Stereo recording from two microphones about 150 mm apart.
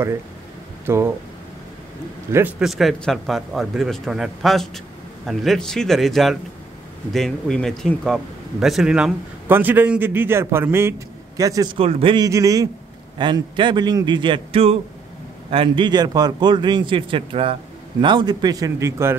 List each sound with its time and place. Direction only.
0.8 s speech: 15° right (ahead or behind)
2.3 s speech: 15° right (ahead or behind)
2.6 s a man's voice: centre (ahead or behind); by 12.3 s 35° right (ahead or behind)
12.3 s a man's voice: 20° right (ahead or behind)